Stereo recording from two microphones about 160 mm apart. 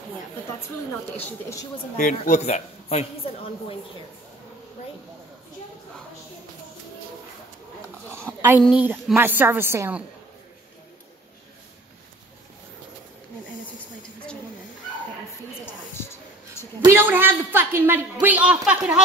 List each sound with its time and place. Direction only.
1.1 s a woman's voice: 20° left (ahead or behind)
2.0 s speech: 50° left (ahead or behind)
8.6 s a woman's voice: 10° right (ahead or behind)
15.6 s a sound: 15° left (ahead or behind)
16.8 s a woman's voice: 15° right (ahead or behind)